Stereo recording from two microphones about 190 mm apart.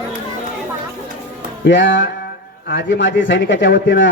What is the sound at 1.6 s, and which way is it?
A man's voice, 70° left (ahead or behind).